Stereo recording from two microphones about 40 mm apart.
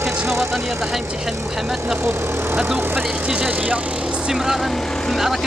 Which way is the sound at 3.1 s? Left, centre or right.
Centre.